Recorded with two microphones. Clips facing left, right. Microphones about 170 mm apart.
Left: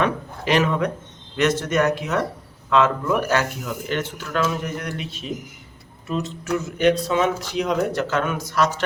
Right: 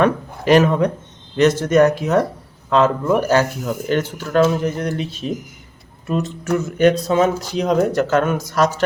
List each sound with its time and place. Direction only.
0.0 s a man's voice: 45° right (ahead or behind)
6.1 s speech: 50° right (ahead or behind)
7.1 s speech: 40° right (ahead or behind)